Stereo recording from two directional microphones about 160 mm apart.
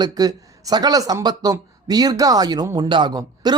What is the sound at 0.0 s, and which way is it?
Speech, 25° right (ahead or behind).